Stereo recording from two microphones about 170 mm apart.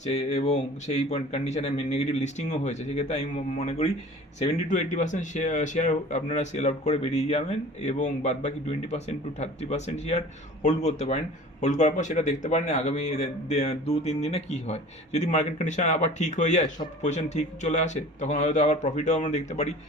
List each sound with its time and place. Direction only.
0.0 s a man's voice: 40° left (ahead or behind)